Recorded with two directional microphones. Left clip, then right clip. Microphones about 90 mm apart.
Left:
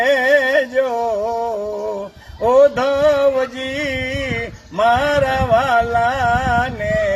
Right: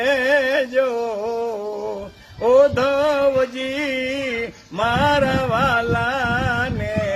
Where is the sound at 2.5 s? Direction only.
25° right (ahead or behind).